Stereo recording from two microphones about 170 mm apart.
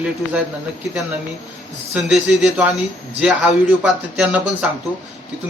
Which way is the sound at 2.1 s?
Centre (ahead or behind).